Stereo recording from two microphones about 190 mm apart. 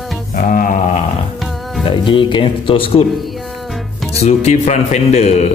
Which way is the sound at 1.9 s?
25° left (ahead or behind).